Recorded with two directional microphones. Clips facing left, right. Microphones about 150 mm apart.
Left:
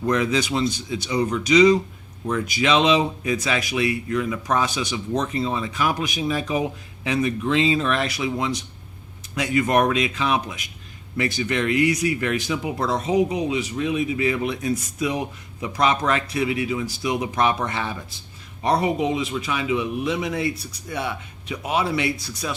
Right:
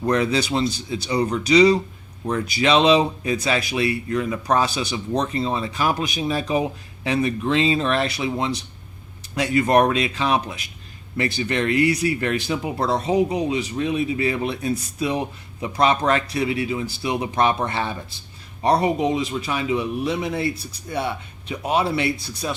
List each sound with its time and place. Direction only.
0.0 s speech: 35° right (ahead or behind)